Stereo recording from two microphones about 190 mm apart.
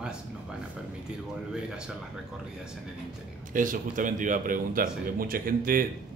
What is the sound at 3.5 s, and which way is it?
Speech, 45° right (ahead or behind).